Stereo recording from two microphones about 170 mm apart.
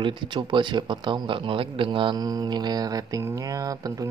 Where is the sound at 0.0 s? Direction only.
30° right (ahead or behind).